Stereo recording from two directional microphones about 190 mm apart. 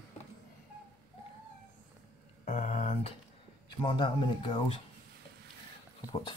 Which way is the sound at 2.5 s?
35° left (ahead or behind).